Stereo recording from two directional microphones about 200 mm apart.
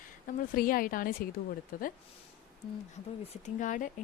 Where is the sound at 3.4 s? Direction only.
40° left (ahead or behind).